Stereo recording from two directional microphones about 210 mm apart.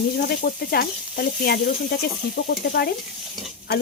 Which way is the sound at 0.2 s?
50° left (ahead or behind).